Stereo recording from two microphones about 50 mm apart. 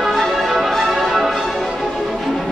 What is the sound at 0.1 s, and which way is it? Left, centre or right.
Music, centre.